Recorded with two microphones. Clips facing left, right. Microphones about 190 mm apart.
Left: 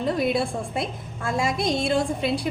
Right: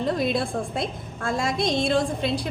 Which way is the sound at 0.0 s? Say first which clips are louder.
Left 1 dB; centre (ahead or behind).